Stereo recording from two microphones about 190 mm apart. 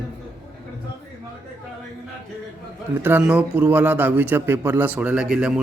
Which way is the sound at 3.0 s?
10° right (ahead or behind).